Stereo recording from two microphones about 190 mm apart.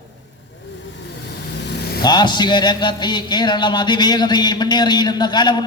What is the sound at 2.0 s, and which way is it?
A man's voice, 20° left (ahead or behind).